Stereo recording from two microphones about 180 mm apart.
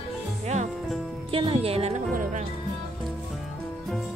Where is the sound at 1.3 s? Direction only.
30° right (ahead or behind).